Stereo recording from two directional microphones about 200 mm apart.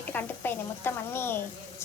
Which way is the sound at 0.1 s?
10° left (ahead or behind).